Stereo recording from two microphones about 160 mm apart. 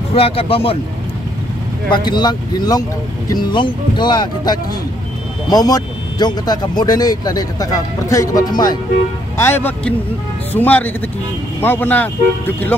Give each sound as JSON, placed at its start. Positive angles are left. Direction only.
{"t": 0.1, "sound": "speech", "side_deg": 35}
{"t": 1.9, "sound": "speech", "side_deg": 30}
{"t": 9.4, "sound": "speech", "side_deg": 15}